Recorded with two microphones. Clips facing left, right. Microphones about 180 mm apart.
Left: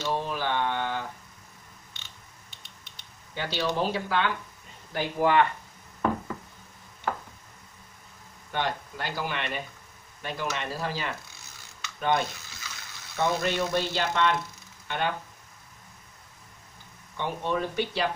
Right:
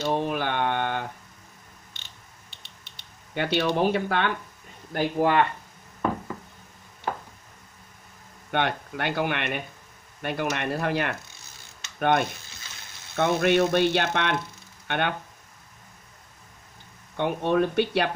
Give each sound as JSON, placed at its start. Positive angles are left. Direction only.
{"t": 0.1, "sound": "mantra", "side_deg": -60}
{"t": 2.6, "sound": "a sound", "side_deg": -30}
{"t": 3.3, "sound": "speech", "side_deg": -60}
{"t": 8.5, "sound": "speech", "side_deg": -65}
{"t": 17.2, "sound": "speech", "side_deg": -60}